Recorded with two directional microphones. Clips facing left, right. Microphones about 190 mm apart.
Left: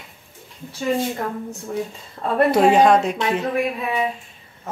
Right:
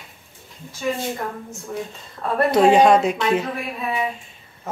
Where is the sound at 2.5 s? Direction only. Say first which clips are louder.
Right 2 dB; centre (ahead or behind).